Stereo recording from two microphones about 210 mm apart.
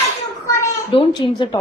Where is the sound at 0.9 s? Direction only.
25° left (ahead or behind).